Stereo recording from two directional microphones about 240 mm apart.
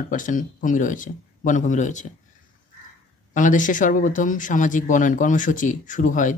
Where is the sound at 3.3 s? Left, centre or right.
Left.